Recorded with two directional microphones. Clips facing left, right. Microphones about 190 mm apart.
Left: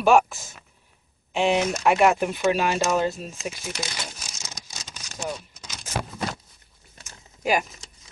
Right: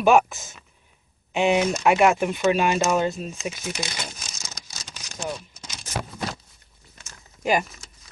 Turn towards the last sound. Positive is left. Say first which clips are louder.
# right 1 dB
turn(degrees=5)  # may be behind; listen again after turning